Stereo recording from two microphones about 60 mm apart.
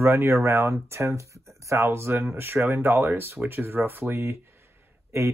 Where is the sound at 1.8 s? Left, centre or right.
Right.